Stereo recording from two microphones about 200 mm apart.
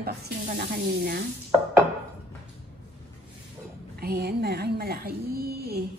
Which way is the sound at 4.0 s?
50° right (ahead or behind).